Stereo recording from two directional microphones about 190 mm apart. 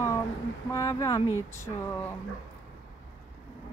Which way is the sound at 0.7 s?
15° left (ahead or behind).